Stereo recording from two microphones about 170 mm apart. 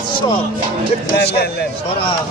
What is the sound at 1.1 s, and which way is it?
Speech, 75° left (ahead or behind).